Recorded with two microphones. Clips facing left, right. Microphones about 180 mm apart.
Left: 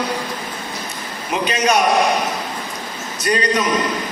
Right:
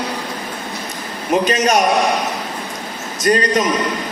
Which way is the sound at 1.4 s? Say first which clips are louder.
Left 1 dB; 45° right (ahead or behind).